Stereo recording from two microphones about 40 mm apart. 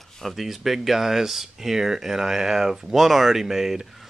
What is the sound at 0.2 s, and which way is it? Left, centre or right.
Speech, centre.